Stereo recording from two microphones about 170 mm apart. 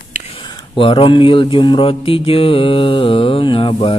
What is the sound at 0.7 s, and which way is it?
Mantra, 30° left (ahead or behind).